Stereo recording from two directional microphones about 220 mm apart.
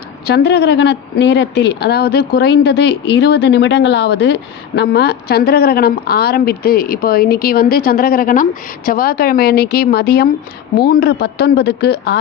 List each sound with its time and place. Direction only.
0.3 s speech: 50° left (ahead or behind)